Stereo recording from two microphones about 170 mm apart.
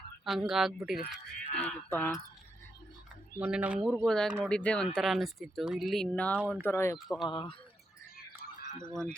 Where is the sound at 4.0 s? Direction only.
5° left (ahead or behind).